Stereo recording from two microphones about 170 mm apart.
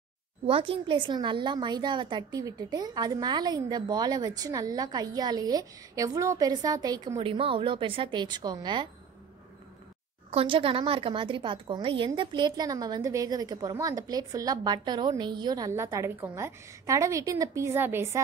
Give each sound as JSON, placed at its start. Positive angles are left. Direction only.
{"t": 0.5, "sound": "a woman's voice", "side_deg": -30}
{"t": 7.2, "sound": "a woman's voice", "side_deg": -30}
{"t": 10.3, "sound": "a woman's voice", "side_deg": -30}